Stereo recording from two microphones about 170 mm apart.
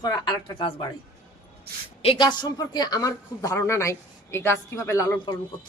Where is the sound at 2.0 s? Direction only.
30° left (ahead or behind).